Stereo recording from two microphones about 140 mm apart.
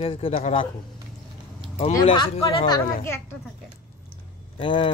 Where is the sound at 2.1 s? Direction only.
40° left (ahead or behind).